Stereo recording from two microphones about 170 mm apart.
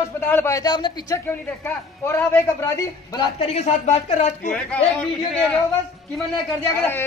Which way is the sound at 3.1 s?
35° left (ahead or behind).